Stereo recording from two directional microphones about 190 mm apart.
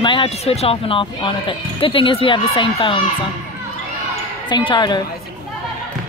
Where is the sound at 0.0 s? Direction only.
25° left (ahead or behind).